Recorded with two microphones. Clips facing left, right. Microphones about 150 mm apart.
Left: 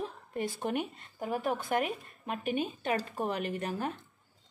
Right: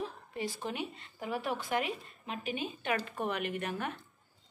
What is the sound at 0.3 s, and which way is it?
A woman's voice, 50° left (ahead or behind).